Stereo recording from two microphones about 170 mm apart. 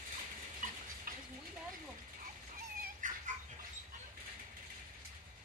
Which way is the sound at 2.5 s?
55° right (ahead or behind).